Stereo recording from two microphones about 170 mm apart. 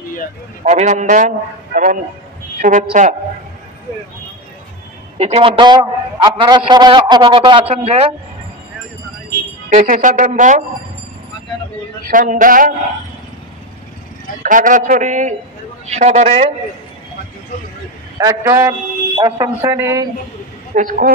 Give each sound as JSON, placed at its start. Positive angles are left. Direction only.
{"t": 0.7, "sound": "a man's voice", "side_deg": -45}
{"t": 5.1, "sound": "a man's voice", "side_deg": -35}
{"t": 9.7, "sound": "a man's voice", "side_deg": -50}
{"t": 12.1, "sound": "a man's voice", "side_deg": -50}
{"t": 14.4, "sound": "a man's voice", "side_deg": -50}
{"t": 18.1, "sound": "a man's voice", "side_deg": -20}
{"t": 20.7, "sound": "a man's voice", "side_deg": -50}